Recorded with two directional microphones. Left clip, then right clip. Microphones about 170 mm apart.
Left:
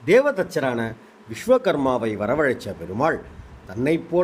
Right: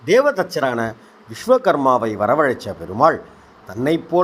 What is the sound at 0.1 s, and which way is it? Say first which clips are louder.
A man's voice: right 2 dB; centre (ahead or behind).